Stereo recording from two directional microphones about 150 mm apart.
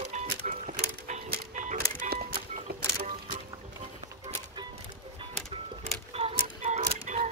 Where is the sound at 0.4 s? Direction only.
55° right (ahead or behind).